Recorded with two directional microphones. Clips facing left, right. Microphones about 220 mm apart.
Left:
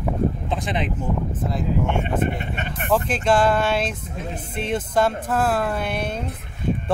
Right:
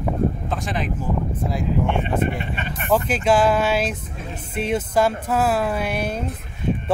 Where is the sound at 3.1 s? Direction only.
5° right (ahead or behind).